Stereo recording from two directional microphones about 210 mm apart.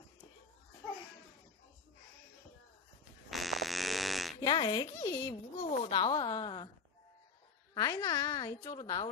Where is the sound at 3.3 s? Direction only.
Centre (ahead or behind).